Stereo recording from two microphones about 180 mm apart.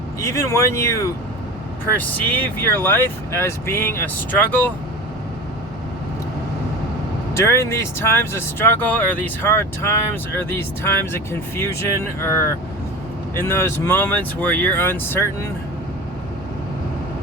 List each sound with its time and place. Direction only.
0.2 s speech: 15° left (ahead or behind)
7.3 s speech: 15° left (ahead or behind)